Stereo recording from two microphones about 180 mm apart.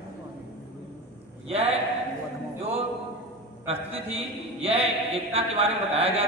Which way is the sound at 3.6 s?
35° right (ahead or behind).